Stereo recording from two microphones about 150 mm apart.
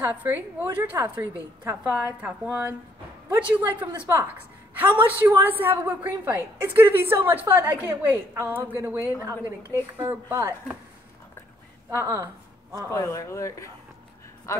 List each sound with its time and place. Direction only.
0.0 s a woman's voice: 15° right (ahead or behind)
11.9 s a woman's voice: 20° right (ahead or behind)
12.9 s speech: 20° left (ahead or behind)